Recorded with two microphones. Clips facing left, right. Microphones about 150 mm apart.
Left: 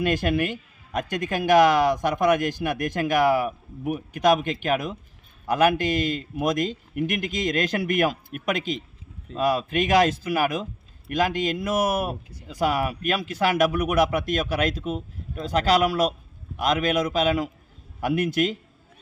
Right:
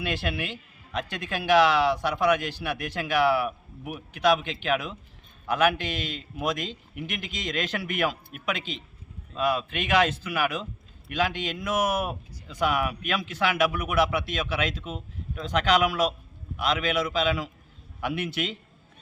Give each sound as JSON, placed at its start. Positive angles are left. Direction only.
{"t": 0.0, "sound": "a man's voice", "side_deg": 45}